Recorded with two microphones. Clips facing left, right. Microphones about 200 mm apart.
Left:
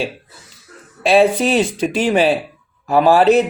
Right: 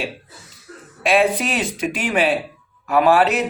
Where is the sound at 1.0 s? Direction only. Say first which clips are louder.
Left 5 dB; 30° left (ahead or behind).